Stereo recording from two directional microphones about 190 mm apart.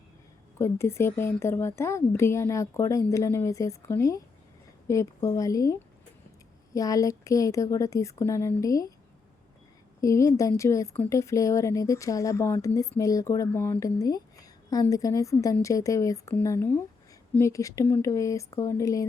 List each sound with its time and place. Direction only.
0.6 s speech: 15° left (ahead or behind)
6.7 s speech: 20° left (ahead or behind)
10.0 s speech: 15° left (ahead or behind)